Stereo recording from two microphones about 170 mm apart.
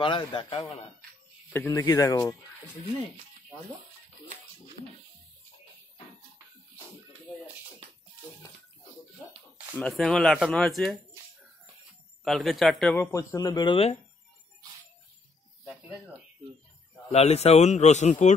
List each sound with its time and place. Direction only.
0.0 s speech: 25° left (ahead or behind)
1.5 s speech: 10° left (ahead or behind)
4.8 s bathtub: 60° right (ahead or behind)
9.8 s speech: 5° left (ahead or behind)
12.3 s speech: centre (ahead or behind)
12.9 s speech: 15° left (ahead or behind)
15.6 s music: 5° right (ahead or behind)
17.1 s a man's voice: 40° left (ahead or behind)